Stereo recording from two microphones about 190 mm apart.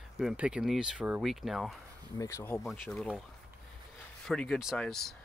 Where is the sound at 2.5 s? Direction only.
Centre (ahead or behind).